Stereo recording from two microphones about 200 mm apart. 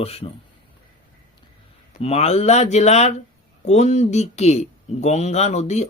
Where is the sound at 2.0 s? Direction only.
30° left (ahead or behind).